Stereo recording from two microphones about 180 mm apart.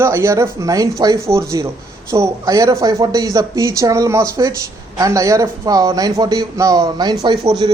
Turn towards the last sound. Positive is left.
turn(degrees=-25)  # may be behind; listen again after turning